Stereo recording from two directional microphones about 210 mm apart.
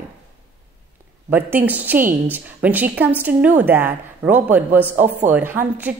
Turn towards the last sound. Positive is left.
turn(degrees=-10)  # may be behind; listen again after turning